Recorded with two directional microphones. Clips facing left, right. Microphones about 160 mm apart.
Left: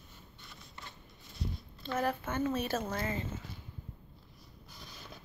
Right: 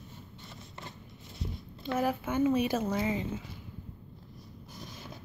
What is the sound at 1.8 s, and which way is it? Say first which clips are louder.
Speech: right 3 dB; 10° right (ahead or behind).